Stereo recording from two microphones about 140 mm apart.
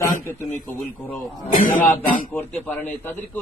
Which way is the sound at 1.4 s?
80° left.